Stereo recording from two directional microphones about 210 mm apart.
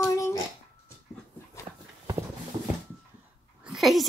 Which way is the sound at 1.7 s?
25° right (ahead or behind).